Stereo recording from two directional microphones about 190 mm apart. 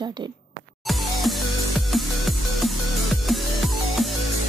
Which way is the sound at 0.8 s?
Centre (ahead or behind).